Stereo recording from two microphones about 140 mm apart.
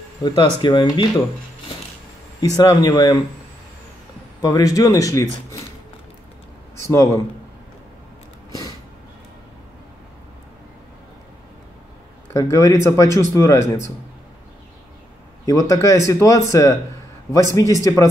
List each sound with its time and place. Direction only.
0.6 s speech: 35° left (ahead or behind)
2.4 s speech: 25° left (ahead or behind)
4.4 s speech: 25° left (ahead or behind)
6.9 s speech: 20° left (ahead or behind)
12.3 s speech: 20° left (ahead or behind)
15.4 s speech: 25° left (ahead or behind)